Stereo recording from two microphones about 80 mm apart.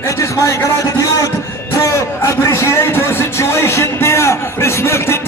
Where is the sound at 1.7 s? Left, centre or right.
Left.